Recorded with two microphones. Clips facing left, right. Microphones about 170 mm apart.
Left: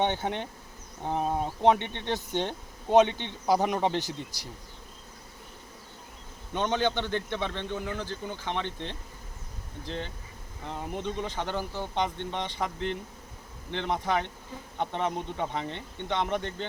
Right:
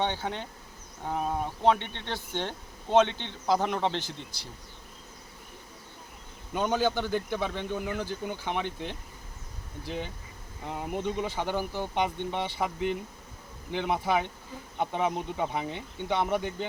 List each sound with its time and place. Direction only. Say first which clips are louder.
0.0 s bee: left 3 dB; 20° left (ahead or behind)
1.0 s speech: left 2 dB; 25° left (ahead or behind)
6.5 s a man's voice: right 1 dB; 5° right (ahead or behind)